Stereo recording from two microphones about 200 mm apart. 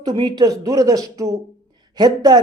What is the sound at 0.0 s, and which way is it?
A man's voice, 20° right (ahead or behind).